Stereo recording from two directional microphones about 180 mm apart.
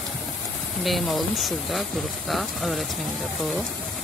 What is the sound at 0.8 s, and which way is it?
Speech, centre (ahead or behind).